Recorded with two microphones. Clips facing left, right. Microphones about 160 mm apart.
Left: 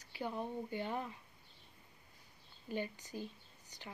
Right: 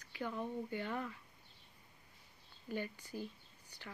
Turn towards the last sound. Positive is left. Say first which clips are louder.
# left 1 dB
turn(degrees=20)  # may be behind; listen again after turning